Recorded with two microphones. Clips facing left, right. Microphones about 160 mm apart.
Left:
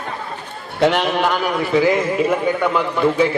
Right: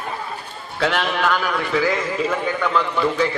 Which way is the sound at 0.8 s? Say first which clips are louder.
Left 4 dB; 25° left (ahead or behind).